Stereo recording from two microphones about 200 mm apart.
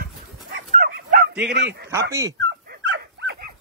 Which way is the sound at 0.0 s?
50° right (ahead or behind).